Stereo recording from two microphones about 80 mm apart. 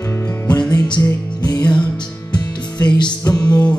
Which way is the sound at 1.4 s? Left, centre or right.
Left.